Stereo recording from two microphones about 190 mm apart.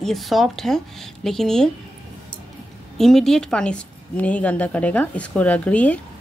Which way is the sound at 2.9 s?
Centre (ahead or behind).